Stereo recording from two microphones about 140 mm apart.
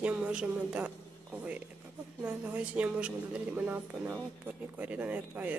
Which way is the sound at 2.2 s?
10° right (ahead or behind).